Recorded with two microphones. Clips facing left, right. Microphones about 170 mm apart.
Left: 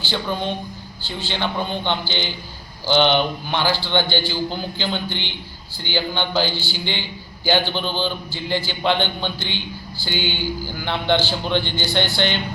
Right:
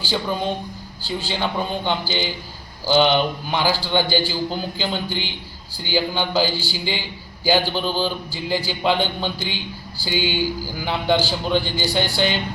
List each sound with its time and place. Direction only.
0.1 s a man's voice: 5° right (ahead or behind)